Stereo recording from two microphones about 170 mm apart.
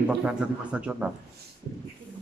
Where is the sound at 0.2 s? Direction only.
5° right (ahead or behind).